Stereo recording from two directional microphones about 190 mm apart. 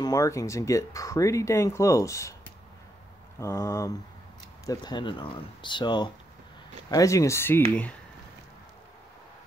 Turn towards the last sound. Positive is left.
turn(degrees=15)  # may be behind; listen again after turning